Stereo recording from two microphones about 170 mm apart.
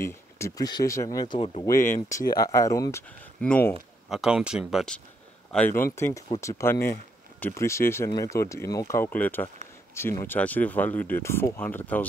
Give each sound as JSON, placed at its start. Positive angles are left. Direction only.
{"t": 0.0, "sound": "speech", "side_deg": 20}
{"t": 1.6, "sound": "speech", "side_deg": 15}
{"t": 3.3, "sound": "speech", "side_deg": 5}